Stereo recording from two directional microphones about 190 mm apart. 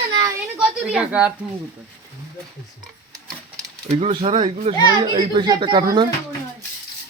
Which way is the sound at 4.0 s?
30° right (ahead or behind).